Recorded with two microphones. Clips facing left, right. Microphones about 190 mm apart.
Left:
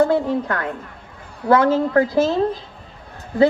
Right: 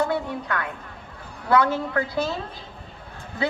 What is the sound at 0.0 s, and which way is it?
A woman's voice, 45° left (ahead or behind).